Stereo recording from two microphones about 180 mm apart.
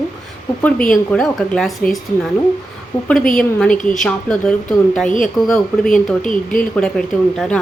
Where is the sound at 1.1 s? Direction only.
5° left (ahead or behind).